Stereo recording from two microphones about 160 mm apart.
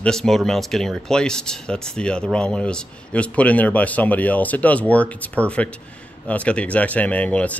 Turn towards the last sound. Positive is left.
turn(degrees=10)  # may be behind; listen again after turning